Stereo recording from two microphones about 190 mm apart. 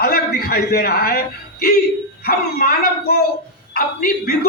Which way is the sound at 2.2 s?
55° left (ahead or behind).